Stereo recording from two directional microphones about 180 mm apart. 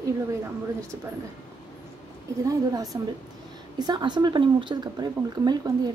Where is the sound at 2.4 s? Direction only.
20° right (ahead or behind).